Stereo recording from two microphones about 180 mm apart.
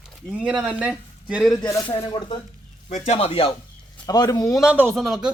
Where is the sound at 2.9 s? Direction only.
40° left (ahead or behind); by 4.6 s 20° left (ahead or behind).